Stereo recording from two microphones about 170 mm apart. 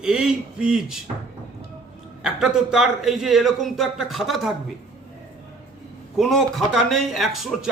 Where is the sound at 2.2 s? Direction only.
5° right (ahead or behind).